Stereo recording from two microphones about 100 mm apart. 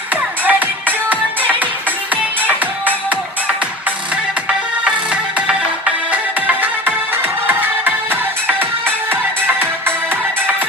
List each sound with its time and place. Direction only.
0.5 s music: 15° right (ahead or behind)
4.8 s music: 10° right (ahead or behind)
7.2 s music: 20° right (ahead or behind)